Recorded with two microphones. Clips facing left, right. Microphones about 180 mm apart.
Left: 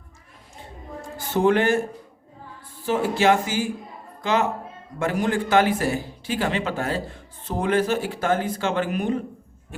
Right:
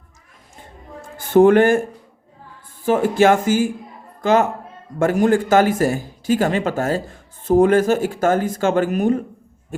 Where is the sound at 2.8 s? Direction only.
50° right (ahead or behind).